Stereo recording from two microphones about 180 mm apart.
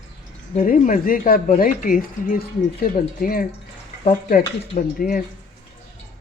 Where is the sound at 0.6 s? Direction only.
45° left (ahead or behind).